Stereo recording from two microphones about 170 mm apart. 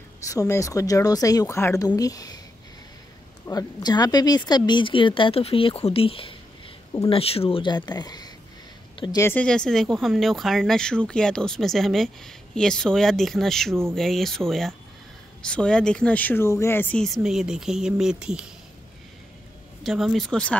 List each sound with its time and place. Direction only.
0.3 s speech: 20° left (ahead or behind)
3.4 s speech: 25° left (ahead or behind)
8.9 s a sound: 25° left (ahead or behind)
9.2 s speech: 10° left (ahead or behind)
19.8 s speech: centre (ahead or behind)